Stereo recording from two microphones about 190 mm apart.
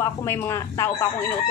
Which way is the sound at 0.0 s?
15° left (ahead or behind).